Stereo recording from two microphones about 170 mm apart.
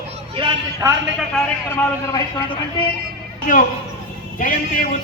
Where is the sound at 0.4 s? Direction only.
30° right (ahead or behind).